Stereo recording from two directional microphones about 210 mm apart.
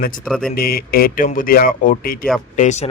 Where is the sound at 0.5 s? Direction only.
45° left (ahead or behind).